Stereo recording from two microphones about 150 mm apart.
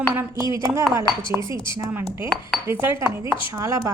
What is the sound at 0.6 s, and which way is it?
A woman's voice, 20° right (ahead or behind).